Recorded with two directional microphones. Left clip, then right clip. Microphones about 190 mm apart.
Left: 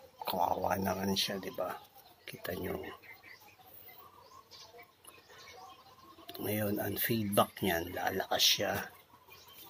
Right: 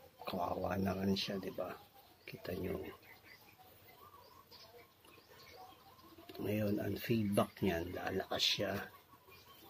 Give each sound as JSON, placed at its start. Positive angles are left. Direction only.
{"t": 0.2, "sound": "speech", "side_deg": -10}
{"t": 6.2, "sound": "a sound", "side_deg": -10}
{"t": 6.6, "sound": "speech", "side_deg": -10}
{"t": 7.0, "sound": "speech", "side_deg": 40}
{"t": 7.3, "sound": "speech", "side_deg": -10}